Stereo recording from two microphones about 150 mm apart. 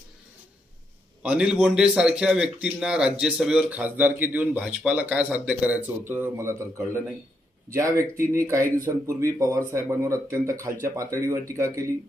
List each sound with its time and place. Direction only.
1.2 s a man's voice: 5° right (ahead or behind)